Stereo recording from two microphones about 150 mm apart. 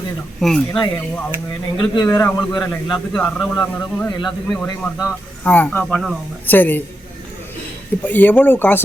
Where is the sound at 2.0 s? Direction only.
20° left (ahead or behind).